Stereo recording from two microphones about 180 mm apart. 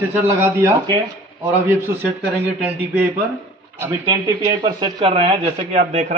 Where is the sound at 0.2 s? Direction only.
15° right (ahead or behind).